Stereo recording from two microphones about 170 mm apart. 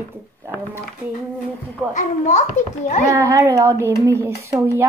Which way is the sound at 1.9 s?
45° left (ahead or behind).